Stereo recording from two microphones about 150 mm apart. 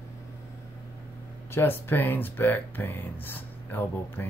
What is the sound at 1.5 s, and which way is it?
Speech, 15° left (ahead or behind).